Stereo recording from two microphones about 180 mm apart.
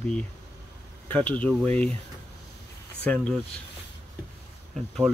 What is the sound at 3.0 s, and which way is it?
Speech, 5° left (ahead or behind).